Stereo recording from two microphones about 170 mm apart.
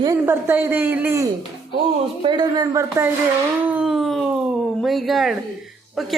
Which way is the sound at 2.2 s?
25° right (ahead or behind).